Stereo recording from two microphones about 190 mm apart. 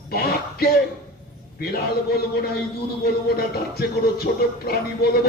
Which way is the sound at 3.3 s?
55° left (ahead or behind).